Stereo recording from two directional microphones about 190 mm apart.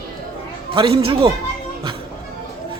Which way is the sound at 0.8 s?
25° right (ahead or behind).